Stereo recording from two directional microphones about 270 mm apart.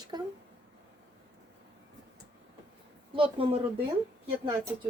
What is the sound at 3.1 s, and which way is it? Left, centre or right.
Speech, centre.